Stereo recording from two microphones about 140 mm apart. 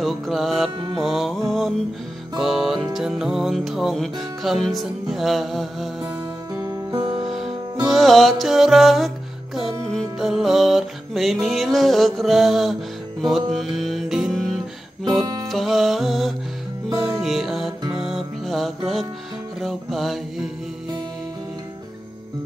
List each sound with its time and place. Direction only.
0.0 s music: centre (ahead or behind)
6.5 s music: 25° right (ahead or behind)
7.8 s music: centre (ahead or behind)